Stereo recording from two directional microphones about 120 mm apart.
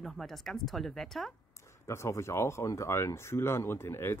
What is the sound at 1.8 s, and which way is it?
Speech, 25° left (ahead or behind).